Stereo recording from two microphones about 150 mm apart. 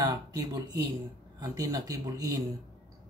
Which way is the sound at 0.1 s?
25° right (ahead or behind).